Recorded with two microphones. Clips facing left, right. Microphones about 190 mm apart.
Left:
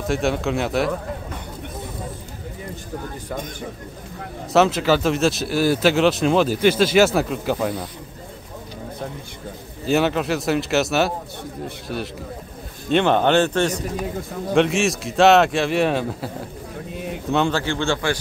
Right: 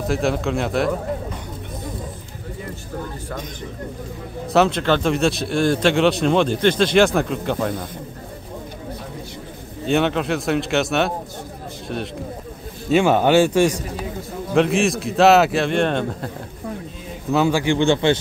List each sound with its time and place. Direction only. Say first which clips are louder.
0.1 s speech: even; centre (ahead or behind)
4.5 s speech: even; centre (ahead or behind)
9.8 s a man's voice: even; centre (ahead or behind)
17.3 s a man's voice: right 3 dB; 10° right (ahead or behind)